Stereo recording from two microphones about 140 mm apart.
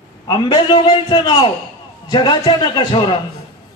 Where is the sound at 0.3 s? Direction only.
35° left (ahead or behind).